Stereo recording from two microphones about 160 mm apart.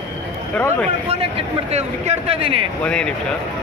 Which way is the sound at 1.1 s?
40° right (ahead or behind).